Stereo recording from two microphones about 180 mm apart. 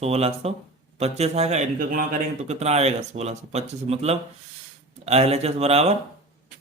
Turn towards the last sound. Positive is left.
turn(degrees=-35)  # may be behind; listen again after turning